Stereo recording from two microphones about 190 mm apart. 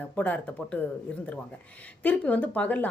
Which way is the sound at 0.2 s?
5° left (ahead or behind).